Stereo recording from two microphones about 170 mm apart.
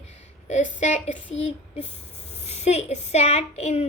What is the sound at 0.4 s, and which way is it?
Speech, 45° left (ahead or behind).